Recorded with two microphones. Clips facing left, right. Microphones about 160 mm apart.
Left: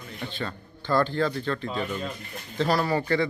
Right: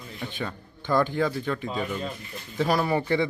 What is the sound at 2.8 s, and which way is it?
Speech, 20° right (ahead or behind).